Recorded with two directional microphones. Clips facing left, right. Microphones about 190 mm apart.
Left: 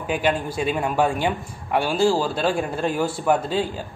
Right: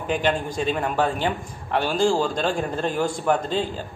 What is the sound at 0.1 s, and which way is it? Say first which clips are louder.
A man's voice: left 1 dB; 10° left (ahead or behind).